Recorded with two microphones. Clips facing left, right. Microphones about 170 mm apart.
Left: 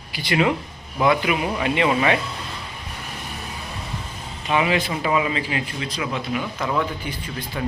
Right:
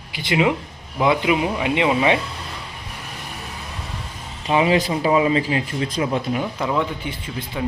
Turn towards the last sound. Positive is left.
turn(degrees=-25)  # may be behind; listen again after turning